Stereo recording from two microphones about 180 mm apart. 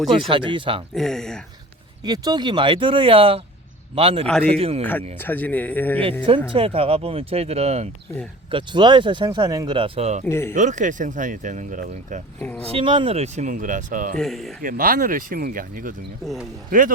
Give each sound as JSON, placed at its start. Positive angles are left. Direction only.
{"t": 0.1, "sound": "speech", "side_deg": -30}
{"t": 0.9, "sound": "speech", "side_deg": 0}
{"t": 2.0, "sound": "speech", "side_deg": -20}
{"t": 4.8, "sound": "speech", "side_deg": 10}
{"t": 6.2, "sound": "speech", "side_deg": -30}
{"t": 10.2, "sound": "speech", "side_deg": 15}
{"t": 10.5, "sound": "speech", "side_deg": -45}
{"t": 12.4, "sound": "speech", "side_deg": 10}
{"t": 12.7, "sound": "speech", "side_deg": -30}
{"t": 14.2, "sound": "speech", "side_deg": 0}
{"t": 14.6, "sound": "speech", "side_deg": -50}
{"t": 16.2, "sound": "speech", "side_deg": 0}
{"t": 16.6, "sound": "speech", "side_deg": -50}